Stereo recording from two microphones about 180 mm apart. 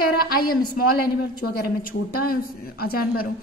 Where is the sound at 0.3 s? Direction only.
55° left (ahead or behind).